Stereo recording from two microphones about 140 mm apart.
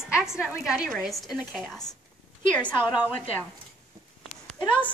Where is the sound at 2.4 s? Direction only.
10° left (ahead or behind).